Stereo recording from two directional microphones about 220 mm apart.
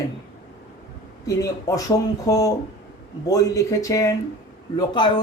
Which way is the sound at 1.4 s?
15° left (ahead or behind).